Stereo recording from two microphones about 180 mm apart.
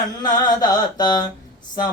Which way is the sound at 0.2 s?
25° left (ahead or behind).